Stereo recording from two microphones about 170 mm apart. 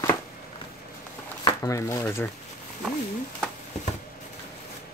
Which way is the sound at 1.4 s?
20° left (ahead or behind).